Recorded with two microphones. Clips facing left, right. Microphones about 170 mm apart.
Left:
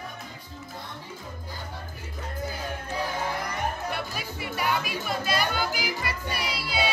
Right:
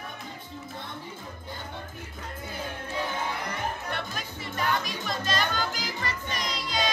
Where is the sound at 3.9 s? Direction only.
10° left (ahead or behind).